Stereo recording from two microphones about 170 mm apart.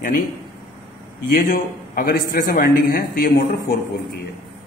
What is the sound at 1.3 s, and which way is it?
A man's voice, 65° left (ahead or behind).